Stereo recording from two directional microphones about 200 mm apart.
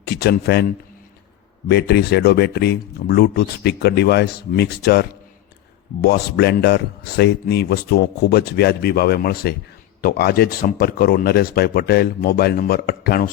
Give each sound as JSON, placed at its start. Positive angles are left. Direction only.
{"t": 0.0, "sound": "speech", "side_deg": 55}
{"t": 1.6, "sound": "speech", "side_deg": 55}